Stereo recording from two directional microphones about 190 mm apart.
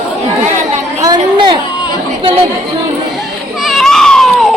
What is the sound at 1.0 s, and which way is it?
Chatter, 20° right (ahead or behind).